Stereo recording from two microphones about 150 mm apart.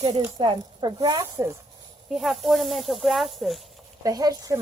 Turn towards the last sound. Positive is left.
turn(degrees=-25)  # may be behind; listen again after turning